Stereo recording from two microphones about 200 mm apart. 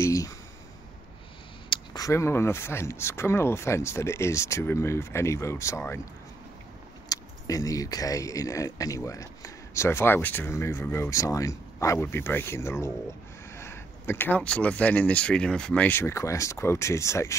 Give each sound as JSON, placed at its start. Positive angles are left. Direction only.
{"t": 0.0, "sound": "a sound", "side_deg": 15}
{"t": 1.7, "sound": "speech", "side_deg": 15}
{"t": 7.1, "sound": "speech", "side_deg": 15}